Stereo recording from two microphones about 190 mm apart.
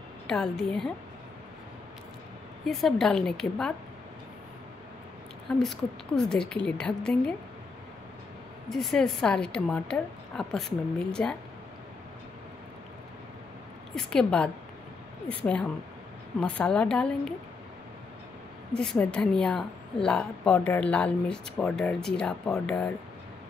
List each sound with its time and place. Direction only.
0.3 s a woman's voice: 5° left (ahead or behind)
2.6 s a woman's voice: centre (ahead or behind)
5.6 s a woman's voice: 5° left (ahead or behind)
8.6 s a woman's voice: centre (ahead or behind)
13.9 s a woman's voice: 5° left (ahead or behind)
18.8 s a woman's voice: 5° left (ahead or behind)